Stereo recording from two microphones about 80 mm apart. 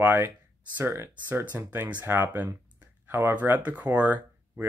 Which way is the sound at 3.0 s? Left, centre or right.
Right.